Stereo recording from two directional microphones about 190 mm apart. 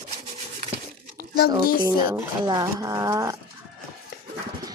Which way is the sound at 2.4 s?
20° right (ahead or behind).